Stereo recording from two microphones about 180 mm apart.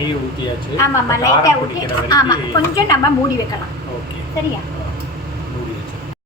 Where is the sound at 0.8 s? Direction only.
15° left (ahead or behind).